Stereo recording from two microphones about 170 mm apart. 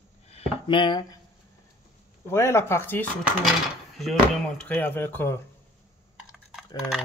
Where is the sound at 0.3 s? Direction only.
35° left (ahead or behind).